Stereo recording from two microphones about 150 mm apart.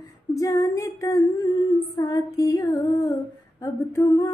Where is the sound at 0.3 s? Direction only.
20° left (ahead or behind).